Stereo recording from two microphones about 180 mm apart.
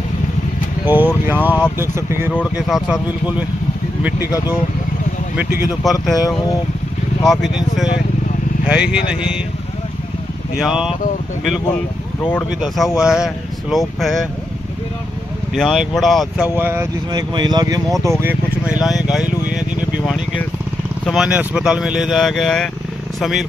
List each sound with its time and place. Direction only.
0.8 s speech: 10° right (ahead or behind)
5.3 s speech: 5° right (ahead or behind)
6.2 s speech: 20° left (ahead or behind)
7.2 s speech: centre (ahead or behind)
10.6 s speech: 5° right (ahead or behind)
12.2 s speech: 10° left (ahead or behind)
12.5 s speech: centre (ahead or behind)
15.5 s speech: centre (ahead or behind)
16.5 s speech: 10° right (ahead or behind)
17.1 s speech: 25° right (ahead or behind); by 19.3 s 5° right (ahead or behind)
21.0 s speech: centre (ahead or behind)